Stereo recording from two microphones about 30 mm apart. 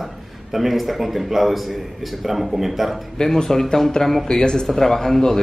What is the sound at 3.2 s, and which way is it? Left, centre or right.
Speech, centre.